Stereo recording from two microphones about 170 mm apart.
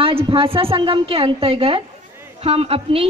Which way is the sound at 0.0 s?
35° right (ahead or behind).